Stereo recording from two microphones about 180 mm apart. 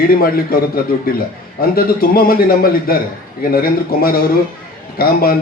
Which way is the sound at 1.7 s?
55° left (ahead or behind).